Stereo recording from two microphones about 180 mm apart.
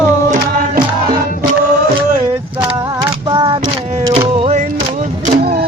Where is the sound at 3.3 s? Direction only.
25° right (ahead or behind).